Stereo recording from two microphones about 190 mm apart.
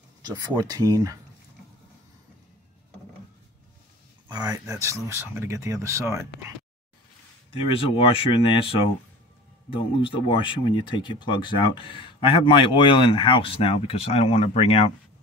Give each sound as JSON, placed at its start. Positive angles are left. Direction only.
{"t": 0.2, "sound": "speech", "side_deg": -20}
{"t": 4.3, "sound": "speech", "side_deg": -20}
{"t": 7.5, "sound": "speech", "side_deg": 30}